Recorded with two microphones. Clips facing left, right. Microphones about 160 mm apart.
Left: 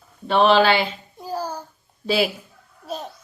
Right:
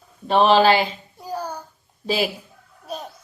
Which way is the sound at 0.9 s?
10° left (ahead or behind).